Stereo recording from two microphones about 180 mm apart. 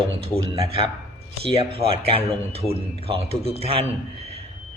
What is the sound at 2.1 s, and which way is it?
Speech, 35° right (ahead or behind).